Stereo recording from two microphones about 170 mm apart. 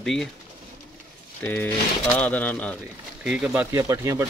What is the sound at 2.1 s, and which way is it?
Speech, 10° left (ahead or behind).